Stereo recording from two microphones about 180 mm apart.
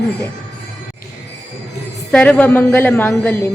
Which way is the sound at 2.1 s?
5° left (ahead or behind).